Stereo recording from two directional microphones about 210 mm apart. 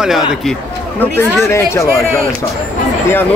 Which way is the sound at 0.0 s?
Centre (ahead or behind).